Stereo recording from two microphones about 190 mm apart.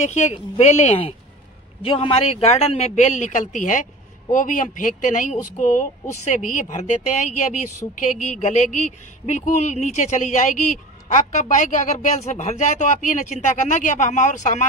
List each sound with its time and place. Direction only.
0.6 s a woman's voice: 35° left (ahead or behind)